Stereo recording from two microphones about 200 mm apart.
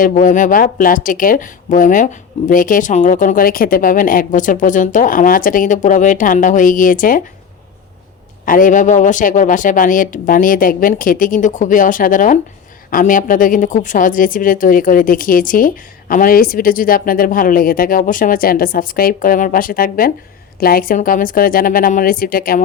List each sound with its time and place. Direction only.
0.0 s speech: 40° left (ahead or behind)
8.4 s a woman's voice: 40° left (ahead or behind)